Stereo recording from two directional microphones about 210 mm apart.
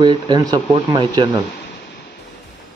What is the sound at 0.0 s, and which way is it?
Speech, 20° right (ahead or behind).